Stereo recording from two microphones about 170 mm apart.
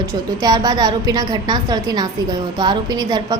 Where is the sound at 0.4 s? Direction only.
25° right (ahead or behind).